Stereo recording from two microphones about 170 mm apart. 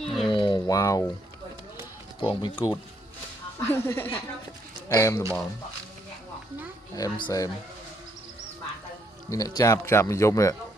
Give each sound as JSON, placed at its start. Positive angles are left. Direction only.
{"t": 0.0, "sound": "a sound", "side_deg": 0}
{"t": 0.3, "sound": "a sound", "side_deg": 30}
{"t": 2.2, "sound": "speech", "side_deg": 30}
{"t": 3.7, "sound": "speech", "side_deg": 10}
{"t": 6.9, "sound": "speech", "side_deg": 25}
{"t": 9.3, "sound": "speech", "side_deg": 20}